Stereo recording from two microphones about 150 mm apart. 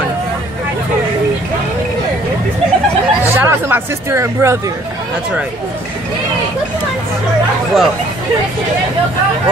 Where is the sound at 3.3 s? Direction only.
15° right (ahead or behind).